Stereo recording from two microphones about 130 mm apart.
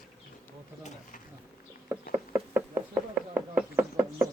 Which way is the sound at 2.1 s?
15° right (ahead or behind).